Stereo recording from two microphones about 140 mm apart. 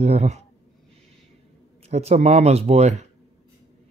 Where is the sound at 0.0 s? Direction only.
50° right (ahead or behind).